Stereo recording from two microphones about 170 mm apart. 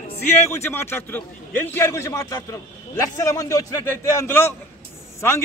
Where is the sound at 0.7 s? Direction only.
15° left (ahead or behind).